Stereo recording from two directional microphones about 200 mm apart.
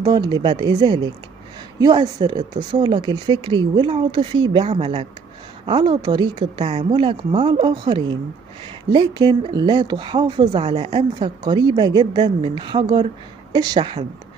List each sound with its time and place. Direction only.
0.0 s speech: 20° right (ahead or behind)